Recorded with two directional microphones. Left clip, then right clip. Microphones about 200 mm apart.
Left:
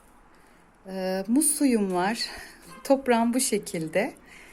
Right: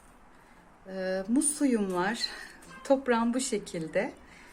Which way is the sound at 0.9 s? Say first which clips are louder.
Left 3 dB; 30° left (ahead or behind).